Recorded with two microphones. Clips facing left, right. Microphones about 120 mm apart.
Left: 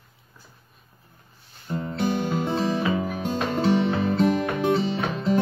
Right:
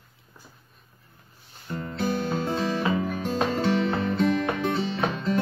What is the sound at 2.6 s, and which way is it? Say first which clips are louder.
Music: left 1 dB; 5° left (ahead or behind).